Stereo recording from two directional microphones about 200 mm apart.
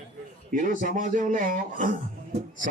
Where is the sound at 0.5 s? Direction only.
40° right (ahead or behind).